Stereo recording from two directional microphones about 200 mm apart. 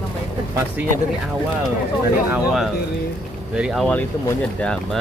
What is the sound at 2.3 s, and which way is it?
Speech, centre (ahead or behind).